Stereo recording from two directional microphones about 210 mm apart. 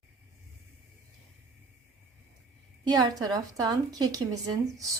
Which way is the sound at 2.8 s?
20° right (ahead or behind).